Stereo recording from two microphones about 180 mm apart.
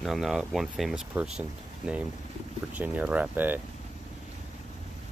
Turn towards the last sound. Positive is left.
turn(degrees=-10)  # may be behind; listen again after turning